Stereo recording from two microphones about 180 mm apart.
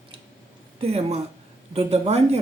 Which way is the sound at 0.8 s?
35° right (ahead or behind).